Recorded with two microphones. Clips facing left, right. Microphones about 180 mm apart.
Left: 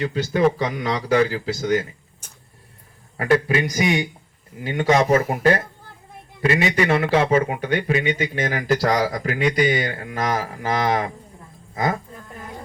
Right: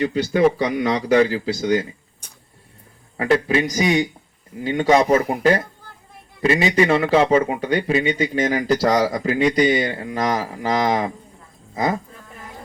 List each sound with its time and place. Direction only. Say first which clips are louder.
0.1 s speech: right 2 dB; 15° right (ahead or behind)
3.2 s speech: right 1 dB; 25° right (ahead or behind)